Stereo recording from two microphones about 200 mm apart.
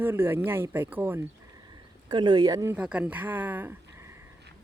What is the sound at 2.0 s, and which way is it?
Speech, 20° right (ahead or behind).